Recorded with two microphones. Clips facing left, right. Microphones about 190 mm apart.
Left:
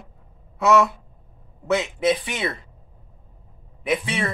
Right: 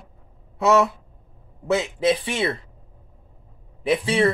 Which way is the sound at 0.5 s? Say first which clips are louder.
Even; 30° right (ahead or behind).